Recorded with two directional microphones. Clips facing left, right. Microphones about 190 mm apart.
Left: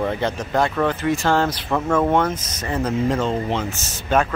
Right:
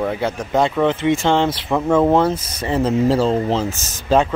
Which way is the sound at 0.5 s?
20° right (ahead or behind).